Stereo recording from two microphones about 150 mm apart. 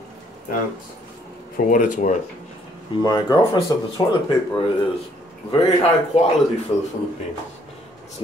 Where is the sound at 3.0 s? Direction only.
25° left (ahead or behind).